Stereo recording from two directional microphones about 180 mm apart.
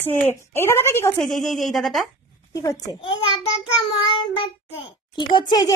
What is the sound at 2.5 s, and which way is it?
A child's voice, 20° left (ahead or behind).